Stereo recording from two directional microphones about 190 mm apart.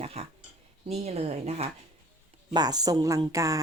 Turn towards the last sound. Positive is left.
turn(degrees=-15)  # may be behind; listen again after turning